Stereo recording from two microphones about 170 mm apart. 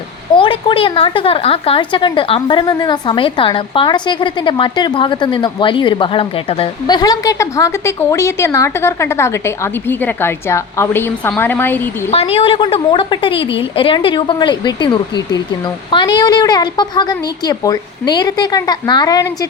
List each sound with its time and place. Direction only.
0.3 s a woman's voice: 30° left (ahead or behind); by 11.8 s 10° left (ahead or behind)
12.1 s a woman's voice: 35° left (ahead or behind)